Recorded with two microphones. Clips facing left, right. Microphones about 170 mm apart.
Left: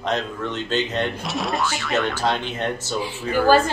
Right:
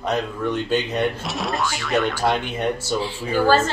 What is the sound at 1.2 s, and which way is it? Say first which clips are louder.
Speech: even; centre (ahead or behind).